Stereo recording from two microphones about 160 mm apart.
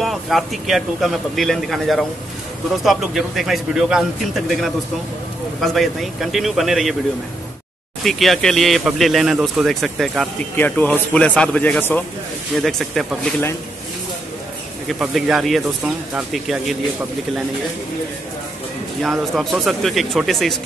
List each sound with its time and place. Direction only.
0.0 s speech: centre (ahead or behind)
8.0 s speech: centre (ahead or behind)
10.5 s speech: 10° left (ahead or behind)
14.9 s speech: centre (ahead or behind)
19.0 s speech: centre (ahead or behind)